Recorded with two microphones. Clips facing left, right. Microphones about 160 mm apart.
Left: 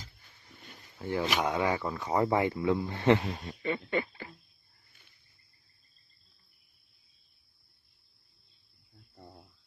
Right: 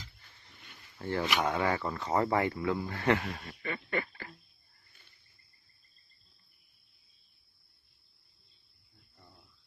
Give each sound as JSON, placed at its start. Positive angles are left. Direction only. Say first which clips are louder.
{"t": 0.6, "sound": "a sound", "louder": "left 5 dB", "side_deg": 40}
{"t": 0.9, "sound": "speech", "louder": "left 1 dB", "side_deg": 10}
{"t": 9.1, "sound": "cricket", "louder": "left 9 dB", "side_deg": 40}